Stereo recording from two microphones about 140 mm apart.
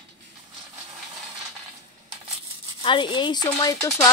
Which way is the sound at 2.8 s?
35° left (ahead or behind).